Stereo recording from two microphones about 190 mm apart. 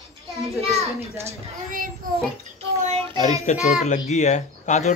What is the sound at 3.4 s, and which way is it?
Speech, 35° left (ahead or behind).